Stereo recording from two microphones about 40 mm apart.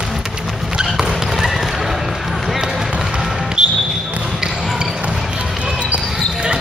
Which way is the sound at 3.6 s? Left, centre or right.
Right.